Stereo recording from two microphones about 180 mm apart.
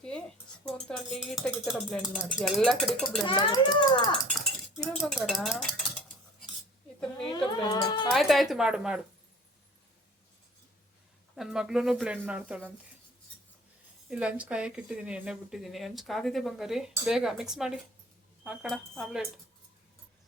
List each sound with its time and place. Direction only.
0.7 s speech: centre (ahead or behind)
3.2 s a child's voice: 25° left (ahead or behind)
4.4 s cutlery: centre (ahead or behind)
7.3 s a sound: 25° left (ahead or behind)
8.1 s speech: centre (ahead or behind)
11.3 s speech: 5° right (ahead or behind)
14.1 s speech: 5° right (ahead or behind)